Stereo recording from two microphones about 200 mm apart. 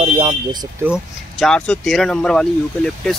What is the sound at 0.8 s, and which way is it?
Speech, centre (ahead or behind).